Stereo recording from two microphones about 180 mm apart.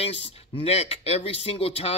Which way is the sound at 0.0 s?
35° left (ahead or behind).